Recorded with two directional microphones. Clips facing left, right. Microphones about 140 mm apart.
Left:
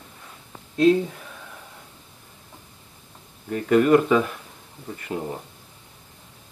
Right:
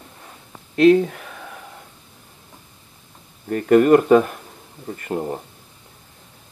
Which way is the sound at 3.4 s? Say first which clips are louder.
Right 4 dB; 50° right (ahead or behind).